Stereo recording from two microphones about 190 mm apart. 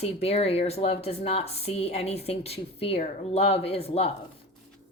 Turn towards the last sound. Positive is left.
turn(degrees=30)  # may be behind; listen again after turning